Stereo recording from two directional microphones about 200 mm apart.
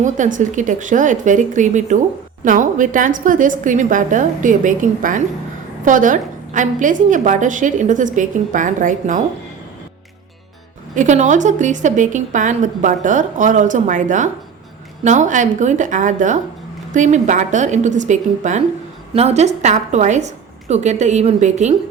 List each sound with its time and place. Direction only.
0.0 s a woman's voice: 40° right (ahead or behind)
10.9 s a woman's voice: 40° right (ahead or behind)